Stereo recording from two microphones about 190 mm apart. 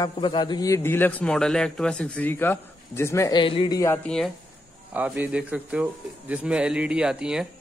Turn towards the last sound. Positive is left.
turn(degrees=-5)  # may be behind; listen again after turning